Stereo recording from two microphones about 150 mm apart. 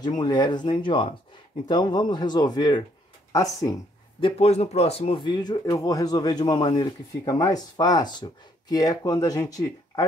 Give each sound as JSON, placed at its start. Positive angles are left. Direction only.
{"t": 0.2, "sound": "speech", "side_deg": 30}
{"t": 4.2, "sound": "speech", "side_deg": 45}